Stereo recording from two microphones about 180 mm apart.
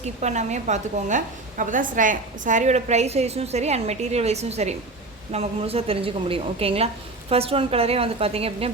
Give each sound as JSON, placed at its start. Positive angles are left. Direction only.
{"t": 0.0, "sound": "a woman's voice", "side_deg": -40}